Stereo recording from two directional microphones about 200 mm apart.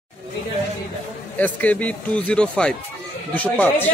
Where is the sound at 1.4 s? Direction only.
10° left (ahead or behind).